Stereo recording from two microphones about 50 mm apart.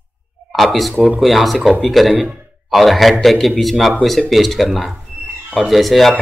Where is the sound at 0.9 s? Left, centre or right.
Right.